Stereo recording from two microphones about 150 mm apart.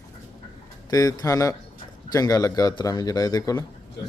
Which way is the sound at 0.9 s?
25° left (ahead or behind).